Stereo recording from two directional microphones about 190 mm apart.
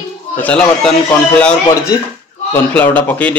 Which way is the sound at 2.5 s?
10° left (ahead or behind).